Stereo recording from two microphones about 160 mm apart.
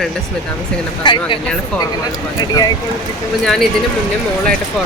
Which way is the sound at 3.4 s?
Centre (ahead or behind).